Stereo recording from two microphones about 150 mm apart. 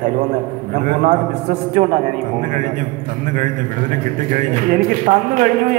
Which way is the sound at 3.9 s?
60° right (ahead or behind).